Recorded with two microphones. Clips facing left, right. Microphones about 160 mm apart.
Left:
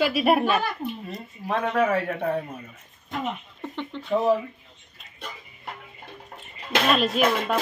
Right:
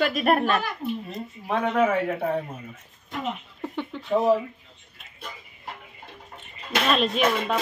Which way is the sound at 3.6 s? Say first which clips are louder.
Right 2 dB; 10° right (ahead or behind).